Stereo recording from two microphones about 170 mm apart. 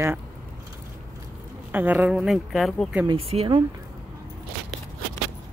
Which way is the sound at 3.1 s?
35° right (ahead or behind).